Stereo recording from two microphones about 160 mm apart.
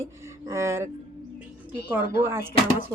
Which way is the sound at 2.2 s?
15° right (ahead or behind).